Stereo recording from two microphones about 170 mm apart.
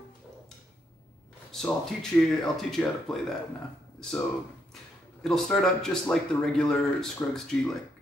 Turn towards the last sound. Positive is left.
turn(degrees=5)  # may be behind; listen again after turning